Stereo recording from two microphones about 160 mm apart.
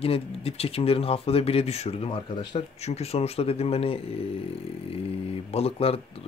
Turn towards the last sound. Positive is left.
turn(degrees=40)  # may be behind; listen again after turning